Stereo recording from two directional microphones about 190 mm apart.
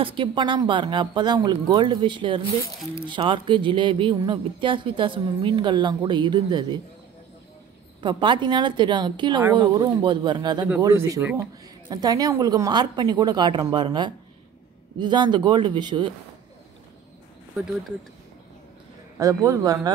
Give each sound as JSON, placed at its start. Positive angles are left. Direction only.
{"t": 0.0, "sound": "speech", "side_deg": -25}
{"t": 8.0, "sound": "a man's voice", "side_deg": -25}
{"t": 19.1, "sound": "a man's voice", "side_deg": -15}